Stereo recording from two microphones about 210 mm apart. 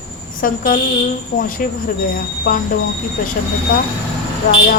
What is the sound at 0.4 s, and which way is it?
Speech, 40° left (ahead or behind).